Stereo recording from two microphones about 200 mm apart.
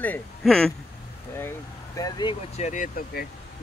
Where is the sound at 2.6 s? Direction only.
40° left (ahead or behind).